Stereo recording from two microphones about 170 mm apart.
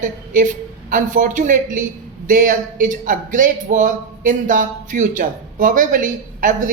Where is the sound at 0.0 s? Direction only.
50° right (ahead or behind).